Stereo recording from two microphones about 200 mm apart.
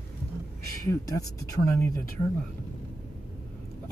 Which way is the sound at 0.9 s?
15° left (ahead or behind).